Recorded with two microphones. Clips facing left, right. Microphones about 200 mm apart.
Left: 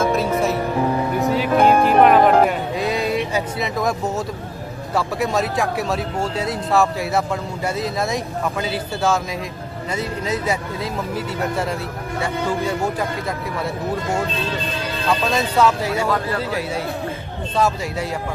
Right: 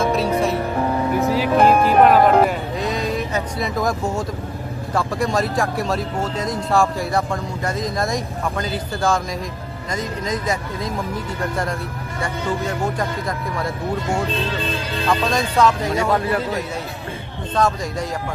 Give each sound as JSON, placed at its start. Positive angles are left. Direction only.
{"t": 0.0, "sound": "music", "side_deg": 0}
{"t": 2.7, "sound": "a sound", "side_deg": 10}
{"t": 3.3, "sound": "speech", "side_deg": 0}
{"t": 4.9, "sound": "speech", "side_deg": 5}
{"t": 12.2, "sound": "speech", "side_deg": 5}
{"t": 15.3, "sound": "speech", "side_deg": 5}
{"t": 16.1, "sound": "speech", "side_deg": -25}
{"t": 17.6, "sound": "speech", "side_deg": 5}